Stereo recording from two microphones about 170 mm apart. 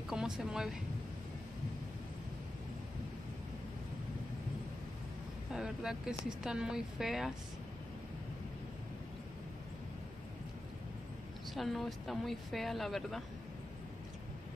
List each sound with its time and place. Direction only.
0.1 s speech: 5° right (ahead or behind)
5.5 s speech: 5° right (ahead or behind)
11.5 s speech: centre (ahead or behind)